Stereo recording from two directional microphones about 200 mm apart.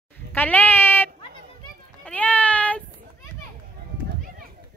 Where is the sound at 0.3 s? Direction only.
10° left (ahead or behind).